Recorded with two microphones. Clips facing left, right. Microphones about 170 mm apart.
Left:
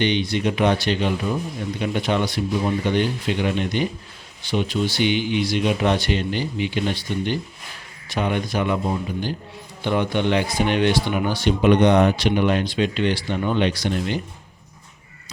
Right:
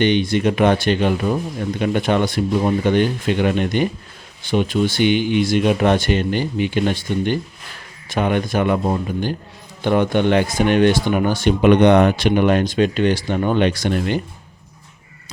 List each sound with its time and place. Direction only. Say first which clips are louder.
0.0 s speech: right 5 dB; 50° right (ahead or behind)